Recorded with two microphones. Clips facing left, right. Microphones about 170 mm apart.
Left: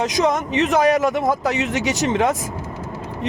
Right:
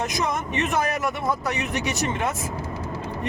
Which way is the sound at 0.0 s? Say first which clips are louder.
Left 7 dB; 90° left.